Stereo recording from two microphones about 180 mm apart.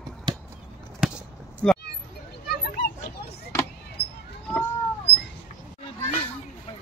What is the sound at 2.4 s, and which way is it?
Children playing, 60° left (ahead or behind).